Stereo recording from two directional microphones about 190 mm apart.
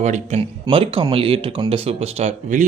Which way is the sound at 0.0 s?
35° right (ahead or behind).